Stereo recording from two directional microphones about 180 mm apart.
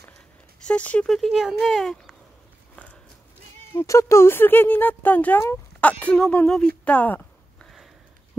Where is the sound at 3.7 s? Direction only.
15° left (ahead or behind).